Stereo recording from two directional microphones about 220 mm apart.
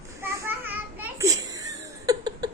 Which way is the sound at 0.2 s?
10° right (ahead or behind).